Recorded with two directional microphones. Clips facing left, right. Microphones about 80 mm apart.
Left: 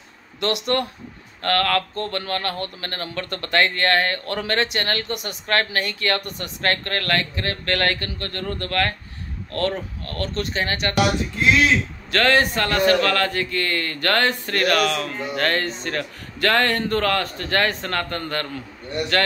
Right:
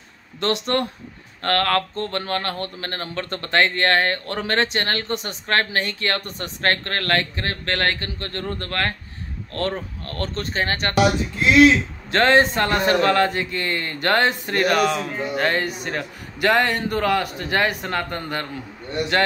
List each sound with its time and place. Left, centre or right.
0.4 s a man's voice: right
12.1 s a man's voice: right